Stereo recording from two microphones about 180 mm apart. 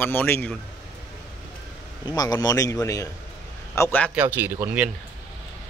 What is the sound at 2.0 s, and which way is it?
A man's voice, 20° left (ahead or behind).